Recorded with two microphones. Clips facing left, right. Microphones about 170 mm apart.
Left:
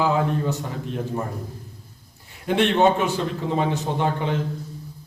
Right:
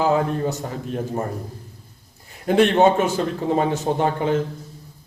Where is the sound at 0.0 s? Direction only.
40° right (ahead or behind).